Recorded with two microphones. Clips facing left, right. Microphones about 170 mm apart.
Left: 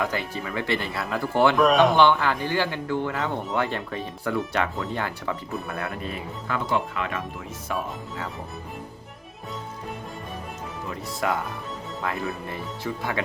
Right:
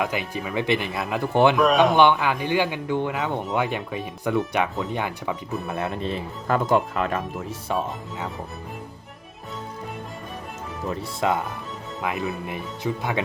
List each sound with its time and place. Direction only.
0.0 s speech: 15° right (ahead or behind)
1.5 s speech: centre (ahead or behind)
2.0 s speech: 15° right (ahead or behind)
6.5 s speech: 45° right (ahead or behind)
7.8 s speech: 20° right (ahead or behind)
11.2 s speech: 25° right (ahead or behind)